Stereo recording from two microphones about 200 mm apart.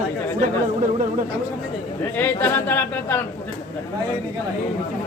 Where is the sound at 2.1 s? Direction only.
10° left (ahead or behind).